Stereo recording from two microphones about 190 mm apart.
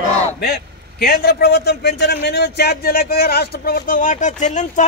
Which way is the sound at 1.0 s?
55° left (ahead or behind).